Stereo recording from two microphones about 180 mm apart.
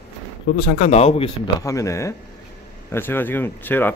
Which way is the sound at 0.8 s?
35° left (ahead or behind).